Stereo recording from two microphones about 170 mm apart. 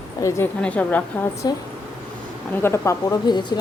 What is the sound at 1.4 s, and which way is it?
Speech, 25° left (ahead or behind).